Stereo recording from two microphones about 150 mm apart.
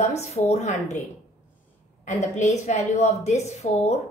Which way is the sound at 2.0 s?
50° left (ahead or behind).